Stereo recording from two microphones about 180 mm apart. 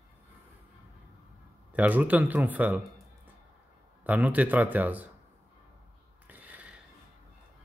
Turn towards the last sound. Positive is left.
turn(degrees=-10)  # may be behind; listen again after turning